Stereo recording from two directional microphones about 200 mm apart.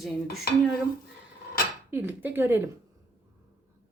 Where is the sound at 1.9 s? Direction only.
10° right (ahead or behind).